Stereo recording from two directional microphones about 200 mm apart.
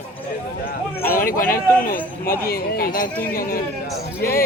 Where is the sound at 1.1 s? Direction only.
45° left (ahead or behind).